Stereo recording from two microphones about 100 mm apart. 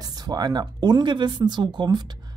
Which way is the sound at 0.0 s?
40° right (ahead or behind).